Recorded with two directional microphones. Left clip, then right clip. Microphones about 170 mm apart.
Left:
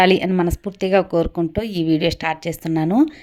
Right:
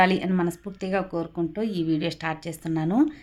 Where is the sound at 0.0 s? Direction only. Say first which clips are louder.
Left 6 dB; 35° left (ahead or behind).